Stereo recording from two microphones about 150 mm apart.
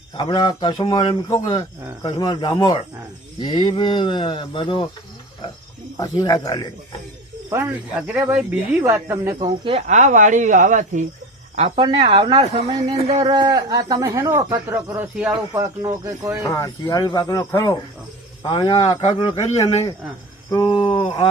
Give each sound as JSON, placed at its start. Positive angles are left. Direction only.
{"t": 0.2, "sound": "a man's voice", "side_deg": 30}
{"t": 6.0, "sound": "a man's voice", "side_deg": 25}
{"t": 7.5, "sound": "speech", "side_deg": -10}
{"t": 9.4, "sound": "speech", "side_deg": -35}
{"t": 9.8, "sound": "speech", "side_deg": -55}
{"t": 11.8, "sound": "speech", "side_deg": -30}
{"t": 16.4, "sound": "a man's voice", "side_deg": 20}
{"t": 20.7, "sound": "a sound", "side_deg": 35}